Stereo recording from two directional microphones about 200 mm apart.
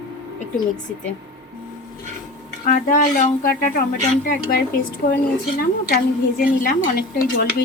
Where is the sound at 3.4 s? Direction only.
45° left (ahead or behind).